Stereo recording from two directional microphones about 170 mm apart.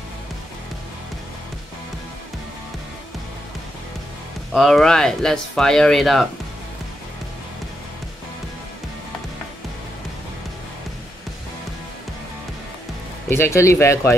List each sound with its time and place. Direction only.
4.5 s speech: centre (ahead or behind)
13.3 s speech: 15° left (ahead or behind)